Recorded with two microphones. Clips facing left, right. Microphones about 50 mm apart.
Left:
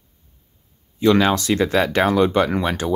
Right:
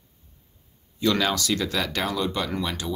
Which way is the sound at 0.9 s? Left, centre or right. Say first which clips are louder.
Left 7 dB; left.